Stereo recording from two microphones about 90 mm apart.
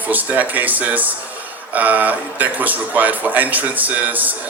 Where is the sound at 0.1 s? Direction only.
20° right (ahead or behind).